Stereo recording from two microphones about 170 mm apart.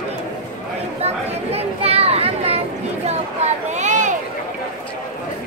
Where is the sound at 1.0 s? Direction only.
40° right (ahead or behind).